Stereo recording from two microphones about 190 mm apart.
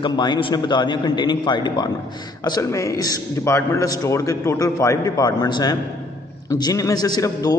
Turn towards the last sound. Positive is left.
turn(degrees=20)  # may be behind; listen again after turning